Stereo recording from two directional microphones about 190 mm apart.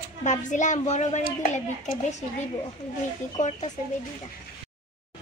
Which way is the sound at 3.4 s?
40° left (ahead or behind).